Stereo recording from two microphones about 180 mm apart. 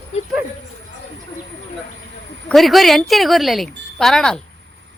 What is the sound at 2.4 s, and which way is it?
Speech, centre (ahead or behind).